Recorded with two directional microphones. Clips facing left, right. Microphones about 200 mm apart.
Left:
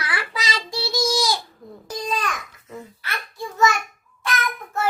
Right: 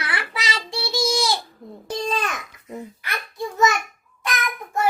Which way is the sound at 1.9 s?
30° right (ahead or behind).